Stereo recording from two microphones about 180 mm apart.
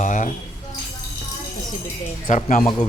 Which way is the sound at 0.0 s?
45° left (ahead or behind).